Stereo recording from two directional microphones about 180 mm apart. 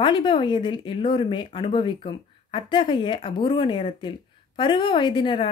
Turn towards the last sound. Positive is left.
turn(degrees=25)  # may be behind; listen again after turning